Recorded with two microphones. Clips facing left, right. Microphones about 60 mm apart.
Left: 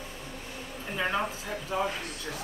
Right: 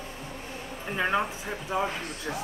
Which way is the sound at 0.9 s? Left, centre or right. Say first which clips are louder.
Right 3 dB; centre.